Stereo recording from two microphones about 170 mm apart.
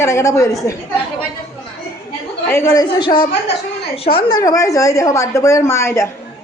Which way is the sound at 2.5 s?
15° left (ahead or behind).